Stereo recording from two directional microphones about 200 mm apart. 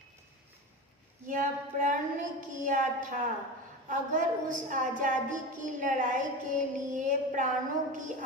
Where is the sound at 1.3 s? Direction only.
40° right (ahead or behind).